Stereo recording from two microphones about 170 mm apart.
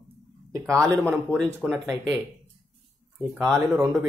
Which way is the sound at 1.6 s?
Centre (ahead or behind).